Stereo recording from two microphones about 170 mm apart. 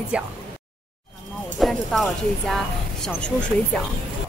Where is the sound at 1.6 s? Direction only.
Centre (ahead or behind).